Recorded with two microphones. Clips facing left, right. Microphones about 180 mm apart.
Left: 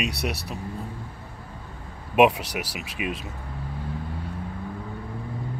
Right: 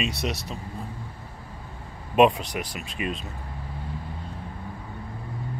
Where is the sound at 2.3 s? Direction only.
75° left (ahead or behind).